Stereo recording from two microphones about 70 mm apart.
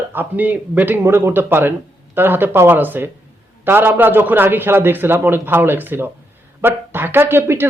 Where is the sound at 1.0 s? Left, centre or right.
Right.